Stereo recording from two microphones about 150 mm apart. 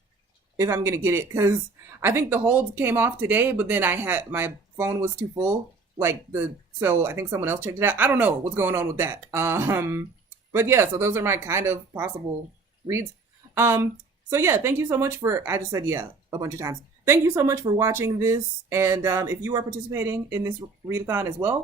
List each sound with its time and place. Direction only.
0.6 s speech: 20° right (ahead or behind)
13.5 s speech: 15° right (ahead or behind)